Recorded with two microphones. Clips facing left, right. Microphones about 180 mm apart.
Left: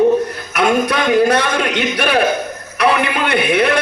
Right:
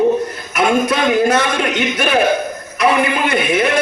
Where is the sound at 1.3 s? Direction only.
35° left (ahead or behind).